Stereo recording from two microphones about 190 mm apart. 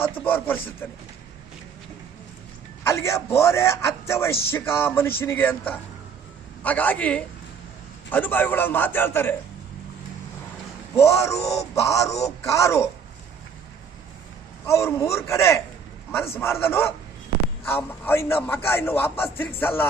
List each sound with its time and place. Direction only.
0.0 s a man's voice: 10° left (ahead or behind)
2.8 s a man's voice: 15° left (ahead or behind)
10.9 s a man's voice: 15° left (ahead or behind)
14.7 s a man's voice: 15° left (ahead or behind)